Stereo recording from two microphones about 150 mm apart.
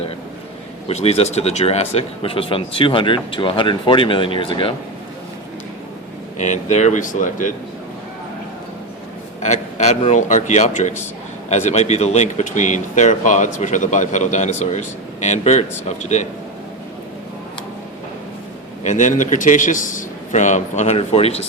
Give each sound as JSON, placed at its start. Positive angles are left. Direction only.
{"t": 0.9, "sound": "speech", "side_deg": 45}
{"t": 6.4, "sound": "speech", "side_deg": 50}
{"t": 9.4, "sound": "a sound", "side_deg": 50}
{"t": 10.1, "sound": "speech", "side_deg": 55}
{"t": 18.8, "sound": "speech", "side_deg": 50}